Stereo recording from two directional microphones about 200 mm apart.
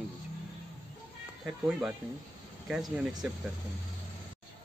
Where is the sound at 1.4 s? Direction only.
5° right (ahead or behind).